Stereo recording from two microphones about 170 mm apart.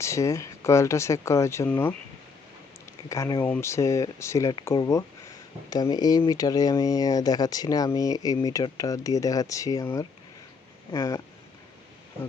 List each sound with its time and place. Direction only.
0.0 s speech: 15° left (ahead or behind)
3.1 s speech: 20° left (ahead or behind)